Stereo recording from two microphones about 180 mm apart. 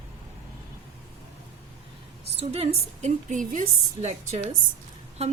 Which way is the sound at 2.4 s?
35° right (ahead or behind).